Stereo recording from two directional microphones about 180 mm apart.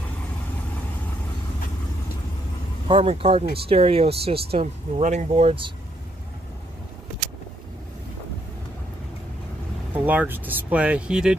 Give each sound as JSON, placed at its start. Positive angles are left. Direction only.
{"t": 2.9, "sound": "speech", "side_deg": -30}
{"t": 9.9, "sound": "speech", "side_deg": -10}